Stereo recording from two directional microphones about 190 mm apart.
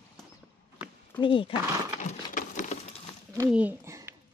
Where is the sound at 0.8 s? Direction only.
25° left (ahead or behind).